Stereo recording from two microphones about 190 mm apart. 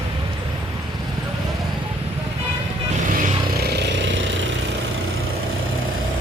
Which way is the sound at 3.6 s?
65° right (ahead or behind).